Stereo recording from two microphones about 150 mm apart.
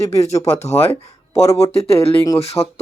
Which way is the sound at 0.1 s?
45° left (ahead or behind).